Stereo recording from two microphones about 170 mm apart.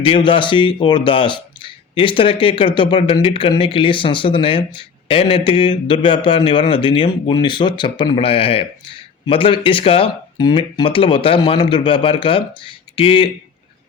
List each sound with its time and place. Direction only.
0.0 s speech: 30° left (ahead or behind)